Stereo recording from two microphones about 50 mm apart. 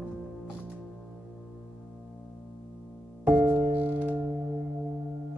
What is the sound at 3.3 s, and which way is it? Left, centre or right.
Music, right.